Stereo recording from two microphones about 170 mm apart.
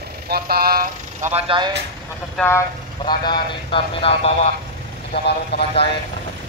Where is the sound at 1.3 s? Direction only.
30° right (ahead or behind).